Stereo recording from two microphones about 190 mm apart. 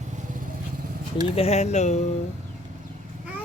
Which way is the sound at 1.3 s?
35° left (ahead or behind).